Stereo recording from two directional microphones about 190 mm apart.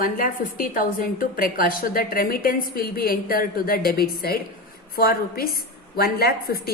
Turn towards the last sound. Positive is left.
turn(degrees=55)  # may be behind; listen again after turning